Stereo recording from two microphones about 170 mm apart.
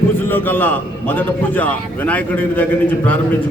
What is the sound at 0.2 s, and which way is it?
A man's voice, 10° left (ahead or behind).